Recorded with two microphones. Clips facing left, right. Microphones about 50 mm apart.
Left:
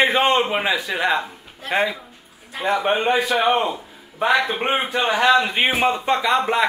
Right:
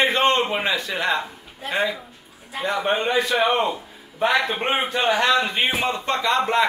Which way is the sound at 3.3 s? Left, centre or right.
Centre.